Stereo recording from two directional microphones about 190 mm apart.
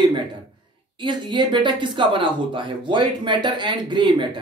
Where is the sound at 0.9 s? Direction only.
25° right (ahead or behind).